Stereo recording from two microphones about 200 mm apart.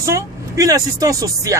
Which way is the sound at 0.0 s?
15° right (ahead or behind).